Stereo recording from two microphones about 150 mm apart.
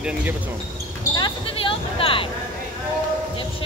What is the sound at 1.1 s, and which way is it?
Basketball bounce, 35° left (ahead or behind).